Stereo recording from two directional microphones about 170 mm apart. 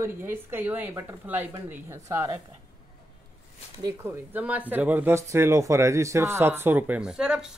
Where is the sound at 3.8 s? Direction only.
15° right (ahead or behind).